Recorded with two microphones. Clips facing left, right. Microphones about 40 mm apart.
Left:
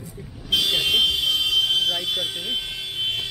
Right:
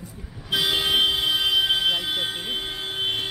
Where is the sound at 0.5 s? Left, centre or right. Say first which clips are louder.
Left 1 dB; centre.